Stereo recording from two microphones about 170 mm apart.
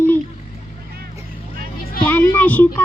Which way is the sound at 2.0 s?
10° left (ahead or behind).